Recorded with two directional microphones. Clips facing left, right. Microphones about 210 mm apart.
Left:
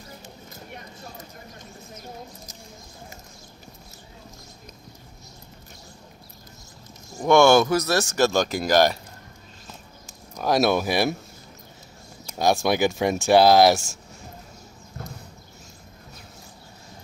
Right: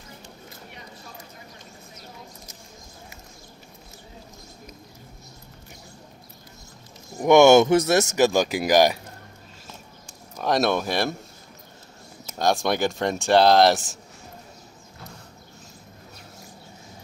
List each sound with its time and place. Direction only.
7.2 s speech: 15° right (ahead or behind)
10.0 s speech: 5° left (ahead or behind)
12.4 s speech: 5° left (ahead or behind)